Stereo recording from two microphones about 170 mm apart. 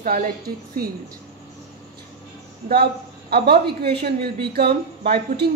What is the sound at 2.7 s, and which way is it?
A woman's voice, 70° right (ahead or behind).